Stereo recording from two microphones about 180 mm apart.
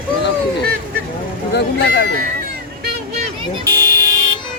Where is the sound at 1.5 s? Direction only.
60° left (ahead or behind).